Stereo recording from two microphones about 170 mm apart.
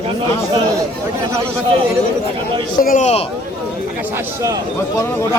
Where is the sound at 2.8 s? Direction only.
50° left (ahead or behind).